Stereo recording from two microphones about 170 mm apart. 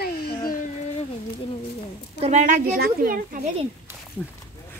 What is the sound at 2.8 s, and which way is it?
Speech, 60° right (ahead or behind).